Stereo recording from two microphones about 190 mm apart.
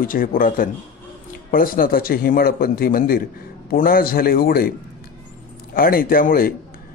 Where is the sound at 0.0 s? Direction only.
50° left (ahead or behind).